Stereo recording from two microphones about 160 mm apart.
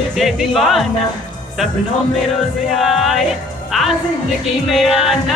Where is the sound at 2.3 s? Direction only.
Centre (ahead or behind).